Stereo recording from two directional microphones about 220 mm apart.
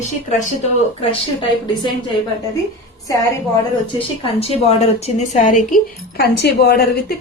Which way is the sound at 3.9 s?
25° left (ahead or behind).